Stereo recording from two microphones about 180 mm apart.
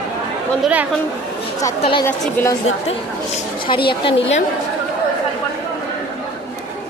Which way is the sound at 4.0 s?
30° left (ahead or behind).